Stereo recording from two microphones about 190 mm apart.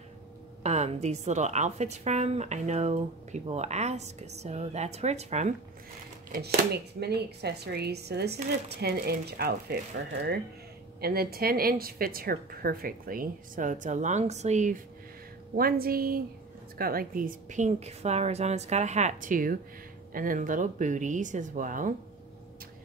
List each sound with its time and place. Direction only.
0.7 s speech: 35° right (ahead or behind)
6.3 s speech: 55° right (ahead or behind)
11.0 s a woman's voice: 55° right (ahead or behind); by 14.8 s 40° right (ahead or behind)
15.5 s a woman's voice: 50° right (ahead or behind)